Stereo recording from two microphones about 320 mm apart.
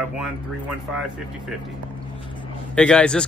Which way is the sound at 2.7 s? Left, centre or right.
Centre.